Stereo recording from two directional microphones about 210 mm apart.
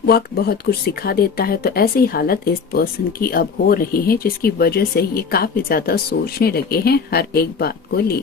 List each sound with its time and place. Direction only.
0.0 s speech: 45° left (ahead or behind)